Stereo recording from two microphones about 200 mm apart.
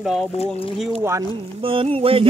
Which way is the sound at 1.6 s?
25° right (ahead or behind).